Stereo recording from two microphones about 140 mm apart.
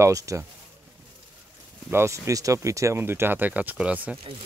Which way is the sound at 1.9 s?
20° right (ahead or behind).